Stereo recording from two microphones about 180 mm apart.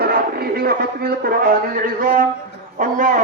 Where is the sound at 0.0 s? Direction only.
55° right (ahead or behind).